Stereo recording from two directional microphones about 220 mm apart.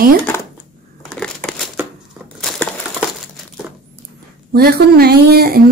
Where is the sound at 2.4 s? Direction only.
Centre (ahead or behind).